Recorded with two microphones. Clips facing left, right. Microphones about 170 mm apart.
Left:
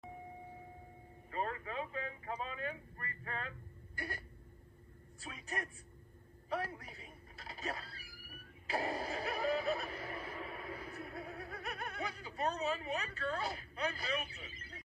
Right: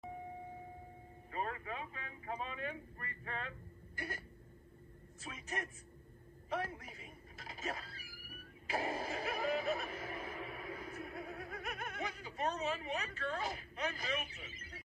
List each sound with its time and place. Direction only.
1.3 s vehicle: 35° left (ahead or behind)
5.3 s a man's voice: 40° left (ahead or behind)
6.5 s a sound: 35° left (ahead or behind)
8.6 s music: 40° left (ahead or behind)